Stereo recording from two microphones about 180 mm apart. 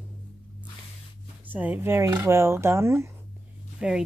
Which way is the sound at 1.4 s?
10° right (ahead or behind).